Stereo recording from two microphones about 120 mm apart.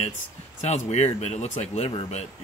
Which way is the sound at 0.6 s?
65° left (ahead or behind).